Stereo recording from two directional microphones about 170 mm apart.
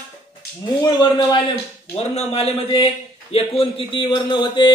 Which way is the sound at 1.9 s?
35° left (ahead or behind).